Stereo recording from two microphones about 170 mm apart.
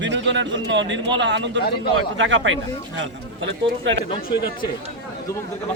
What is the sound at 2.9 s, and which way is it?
A man's voice, 90° right.